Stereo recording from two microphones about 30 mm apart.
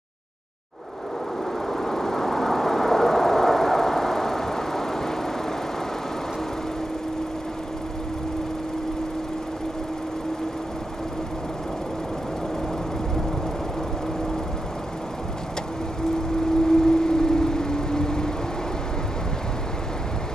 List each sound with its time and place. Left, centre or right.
1.7 s vehicle: centre
16.3 s vehicle: left